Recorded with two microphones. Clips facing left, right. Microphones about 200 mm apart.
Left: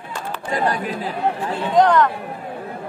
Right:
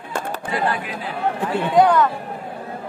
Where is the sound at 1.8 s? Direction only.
10° right (ahead or behind).